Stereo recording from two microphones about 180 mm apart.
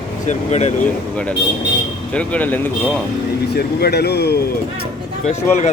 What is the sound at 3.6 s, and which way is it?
Speech, 60° left (ahead or behind).